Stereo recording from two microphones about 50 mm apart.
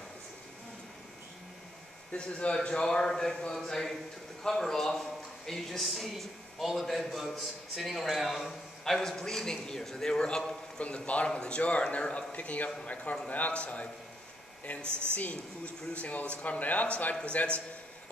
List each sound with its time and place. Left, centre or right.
2.1 s a man's voice: centre
9.0 s a man's voice: centre